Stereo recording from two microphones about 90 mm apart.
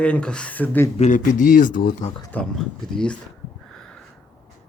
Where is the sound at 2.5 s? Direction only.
5° left (ahead or behind).